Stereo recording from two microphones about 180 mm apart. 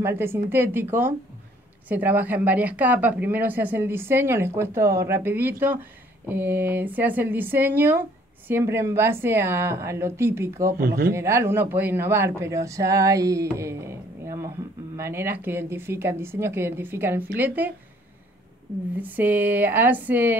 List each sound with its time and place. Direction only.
0.0 s speech: 10° right (ahead or behind)
10.8 s speech: 55° right (ahead or behind)
11.1 s speech: 15° right (ahead or behind)
18.9 s speech: 10° right (ahead or behind)